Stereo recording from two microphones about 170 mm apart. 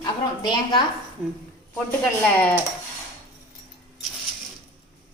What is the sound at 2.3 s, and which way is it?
Speech, 10° left (ahead or behind).